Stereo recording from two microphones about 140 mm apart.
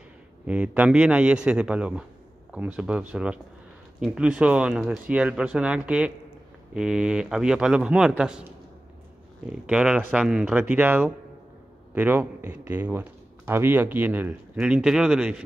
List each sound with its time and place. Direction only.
0.5 s speech: 10° right (ahead or behind)
9.5 s speech: 5° right (ahead or behind)